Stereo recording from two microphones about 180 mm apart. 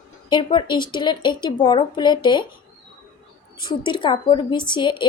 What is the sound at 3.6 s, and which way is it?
A woman's voice, 25° left (ahead or behind).